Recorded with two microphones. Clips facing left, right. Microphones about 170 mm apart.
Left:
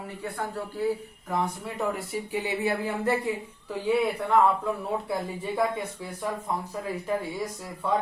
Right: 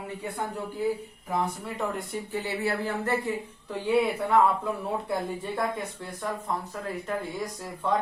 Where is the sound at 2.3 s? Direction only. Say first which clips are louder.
Left 1 dB; 15° left (ahead or behind).